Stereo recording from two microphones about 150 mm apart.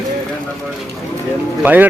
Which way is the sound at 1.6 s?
10° right (ahead or behind).